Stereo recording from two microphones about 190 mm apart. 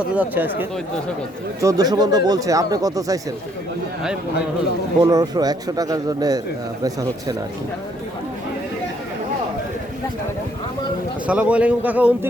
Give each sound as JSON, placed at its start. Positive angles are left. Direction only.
{"t": 0.0, "sound": "a man's voice", "side_deg": -5}
{"t": 4.9, "sound": "speech", "side_deg": -20}
{"t": 11.3, "sound": "a man's voice", "side_deg": -5}